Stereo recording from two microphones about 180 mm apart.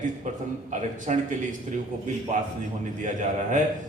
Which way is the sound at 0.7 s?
40° right (ahead or behind).